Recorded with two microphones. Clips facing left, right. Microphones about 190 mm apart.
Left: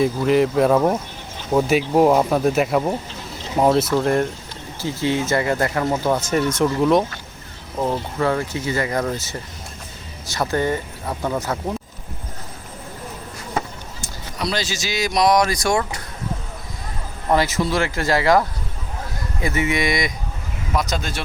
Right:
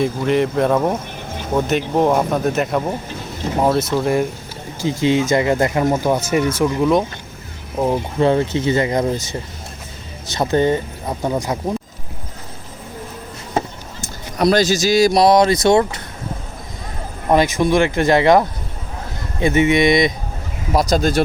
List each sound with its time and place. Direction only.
0.0 s speech: centre (ahead or behind)
3.9 s speech: 5° right (ahead or behind)
4.8 s speech: 15° right (ahead or behind)
7.8 s speech: 15° right (ahead or behind)
14.3 s speech: 45° right (ahead or behind); by 16.0 s 25° right (ahead or behind)
17.2 s speech: 20° right (ahead or behind)
20.7 s speech: 40° right (ahead or behind)